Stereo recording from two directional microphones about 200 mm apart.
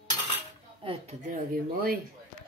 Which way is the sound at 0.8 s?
30° right (ahead or behind).